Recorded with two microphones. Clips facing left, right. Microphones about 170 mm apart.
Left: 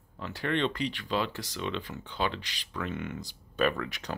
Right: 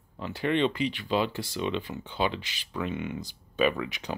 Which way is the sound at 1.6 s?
15° right (ahead or behind).